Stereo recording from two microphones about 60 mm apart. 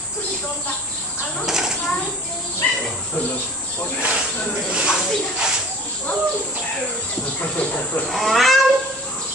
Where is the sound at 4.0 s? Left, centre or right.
Centre.